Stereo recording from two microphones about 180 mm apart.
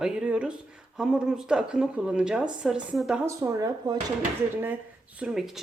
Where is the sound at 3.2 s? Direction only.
20° right (ahead or behind).